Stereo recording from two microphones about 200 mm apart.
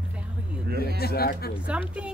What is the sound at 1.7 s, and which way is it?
Speech, 5° right (ahead or behind).